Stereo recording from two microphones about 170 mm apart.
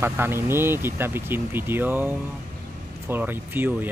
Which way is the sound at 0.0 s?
15° right (ahead or behind).